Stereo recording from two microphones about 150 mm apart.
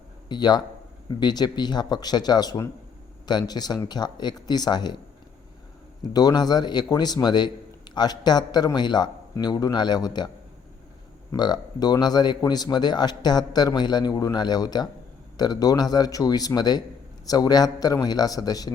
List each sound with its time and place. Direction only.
0.3 s a man's voice: 30° left (ahead or behind)
6.0 s a man's voice: 25° left (ahead or behind)